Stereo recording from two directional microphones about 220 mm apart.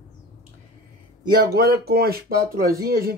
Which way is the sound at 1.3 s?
45° right (ahead or behind).